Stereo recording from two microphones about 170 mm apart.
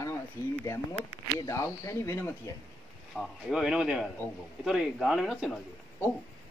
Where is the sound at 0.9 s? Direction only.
30° left (ahead or behind).